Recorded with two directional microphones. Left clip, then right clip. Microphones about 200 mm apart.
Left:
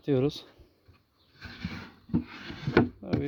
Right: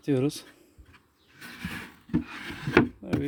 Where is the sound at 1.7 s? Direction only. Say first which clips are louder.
Right 3 dB; centre (ahead or behind).